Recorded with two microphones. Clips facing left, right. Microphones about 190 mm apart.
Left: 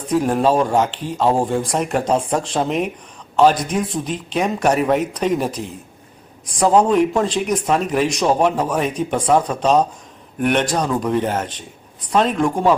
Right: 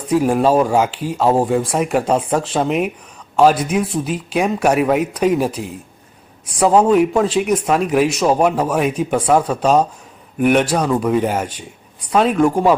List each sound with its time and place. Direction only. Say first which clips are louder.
0.1 s speech: right 2 dB; 5° right (ahead or behind)